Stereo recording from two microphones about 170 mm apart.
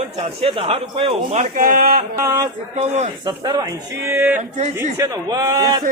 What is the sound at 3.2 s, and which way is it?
Speech, 25° right (ahead or behind).